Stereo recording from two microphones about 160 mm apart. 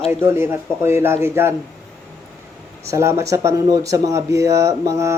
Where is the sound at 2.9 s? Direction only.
15° right (ahead or behind).